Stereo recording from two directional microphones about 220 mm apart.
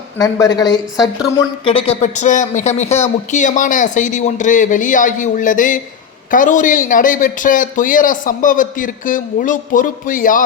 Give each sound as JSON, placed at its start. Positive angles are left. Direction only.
{"t": 0.2, "sound": "speech", "side_deg": 15}